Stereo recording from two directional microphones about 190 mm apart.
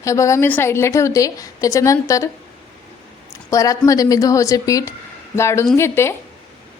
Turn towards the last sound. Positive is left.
turn(degrees=15)  # may be behind; listen again after turning